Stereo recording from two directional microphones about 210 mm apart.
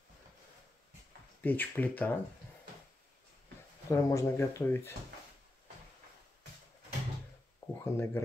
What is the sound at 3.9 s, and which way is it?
Speech, 15° left (ahead or behind).